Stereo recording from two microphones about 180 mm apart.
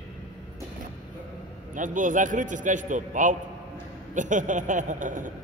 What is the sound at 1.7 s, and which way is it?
A man's voice, 45° right (ahead or behind).